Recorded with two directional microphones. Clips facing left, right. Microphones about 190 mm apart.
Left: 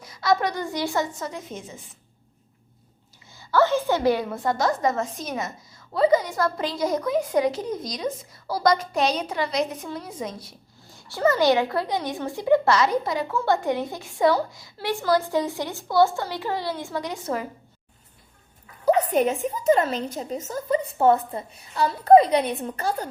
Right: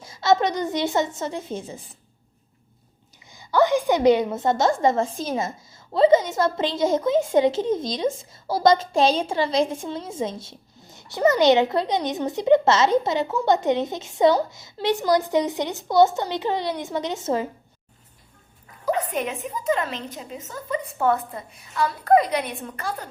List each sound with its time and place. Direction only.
0.0 s a woman's voice: 25° right (ahead or behind)
3.3 s a woman's voice: 15° right (ahead or behind)
18.9 s a woman's voice: 40° left (ahead or behind)